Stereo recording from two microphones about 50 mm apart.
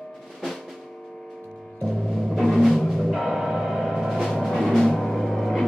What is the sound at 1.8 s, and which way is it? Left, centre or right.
Timpani, centre.